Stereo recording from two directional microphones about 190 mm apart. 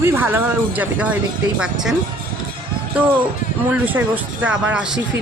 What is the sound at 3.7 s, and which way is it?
A woman's voice, 10° right (ahead or behind).